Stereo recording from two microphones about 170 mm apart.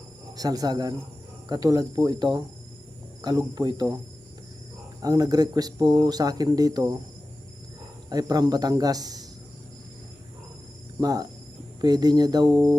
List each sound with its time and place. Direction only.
0.3 s speech: 20° right (ahead or behind)
5.0 s speech: 20° right (ahead or behind)
8.1 s speech: 20° right (ahead or behind)
11.0 s speech: 20° right (ahead or behind)